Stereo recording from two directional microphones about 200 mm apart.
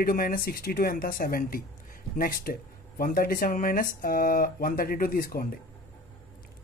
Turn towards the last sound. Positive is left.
turn(degrees=45)  # may be behind; listen again after turning